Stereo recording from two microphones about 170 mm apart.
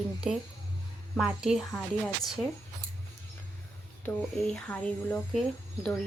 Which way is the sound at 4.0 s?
10° left (ahead or behind).